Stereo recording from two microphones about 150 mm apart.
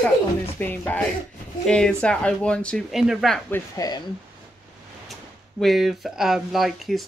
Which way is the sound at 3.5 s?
25° left (ahead or behind).